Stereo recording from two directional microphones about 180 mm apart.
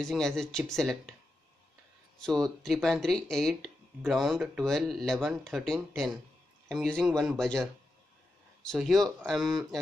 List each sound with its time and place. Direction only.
0.0 s speech: 5° left (ahead or behind)
2.1 s speech: centre (ahead or behind)